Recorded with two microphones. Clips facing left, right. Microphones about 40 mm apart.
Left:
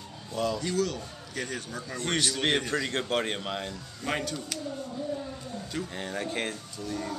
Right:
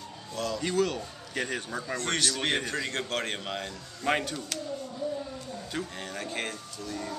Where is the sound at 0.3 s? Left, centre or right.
Centre.